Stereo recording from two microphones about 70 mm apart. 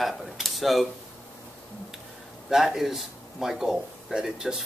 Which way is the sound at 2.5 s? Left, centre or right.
Centre.